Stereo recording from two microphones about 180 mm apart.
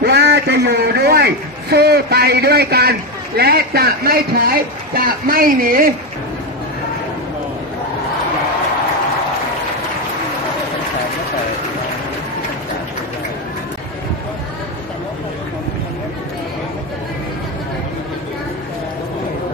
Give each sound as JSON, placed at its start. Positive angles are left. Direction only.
{"t": 0.0, "sound": "a man's voice", "side_deg": -65}